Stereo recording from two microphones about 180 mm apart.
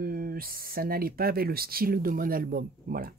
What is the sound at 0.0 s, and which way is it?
Speech, 55° right (ahead or behind).